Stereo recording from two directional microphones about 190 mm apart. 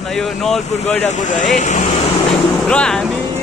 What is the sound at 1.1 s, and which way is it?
Speech, 40° left (ahead or behind).